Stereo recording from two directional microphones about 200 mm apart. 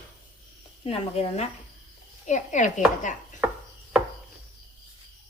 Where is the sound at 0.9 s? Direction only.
30° left (ahead or behind).